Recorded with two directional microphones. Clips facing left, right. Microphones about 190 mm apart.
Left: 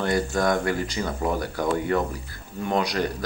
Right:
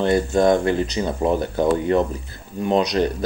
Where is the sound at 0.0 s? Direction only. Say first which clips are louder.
Right 6 dB; 25° right (ahead or behind).